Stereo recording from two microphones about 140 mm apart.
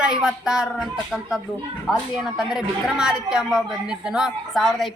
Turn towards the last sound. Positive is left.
turn(degrees=0)  # may be behind; listen again after turning